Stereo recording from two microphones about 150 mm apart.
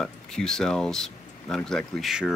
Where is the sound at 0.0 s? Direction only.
5° left (ahead or behind).